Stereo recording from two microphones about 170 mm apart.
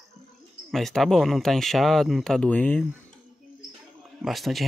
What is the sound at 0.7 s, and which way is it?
Speech, centre (ahead or behind).